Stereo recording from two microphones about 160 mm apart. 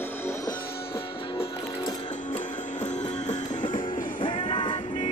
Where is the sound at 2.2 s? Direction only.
50° left (ahead or behind).